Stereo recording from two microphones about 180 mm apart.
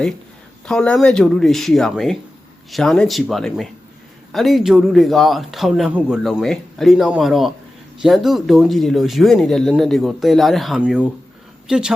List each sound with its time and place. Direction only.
0.7 s speech: 5° left (ahead or behind)